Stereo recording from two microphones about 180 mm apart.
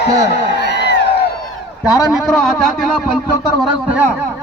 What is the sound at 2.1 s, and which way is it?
Speech, centre (ahead or behind).